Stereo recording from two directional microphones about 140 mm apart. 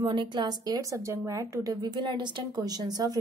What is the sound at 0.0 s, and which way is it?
A woman's voice, 35° right (ahead or behind).